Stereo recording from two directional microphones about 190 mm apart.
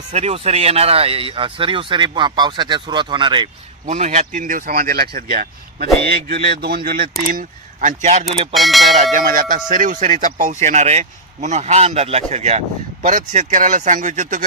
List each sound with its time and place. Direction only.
0.1 s speech: 30° right (ahead or behind)
3.8 s speech: 35° right (ahead or behind)
8.5 s speech: centre (ahead or behind)
8.9 s speech: 45° right (ahead or behind)